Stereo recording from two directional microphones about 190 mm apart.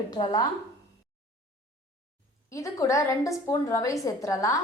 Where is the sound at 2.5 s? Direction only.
15° left (ahead or behind).